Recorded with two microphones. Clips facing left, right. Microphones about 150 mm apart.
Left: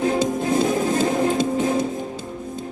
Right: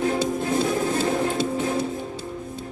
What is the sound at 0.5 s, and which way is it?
Music, 20° left (ahead or behind).